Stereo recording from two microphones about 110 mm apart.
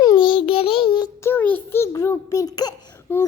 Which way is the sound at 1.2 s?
20° left (ahead or behind).